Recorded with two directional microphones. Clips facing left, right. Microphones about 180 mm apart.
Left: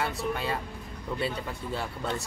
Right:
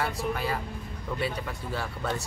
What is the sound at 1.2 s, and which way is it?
Speech, 25° left (ahead or behind).